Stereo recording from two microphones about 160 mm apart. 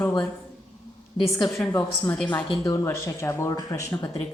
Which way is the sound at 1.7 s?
10° left (ahead or behind).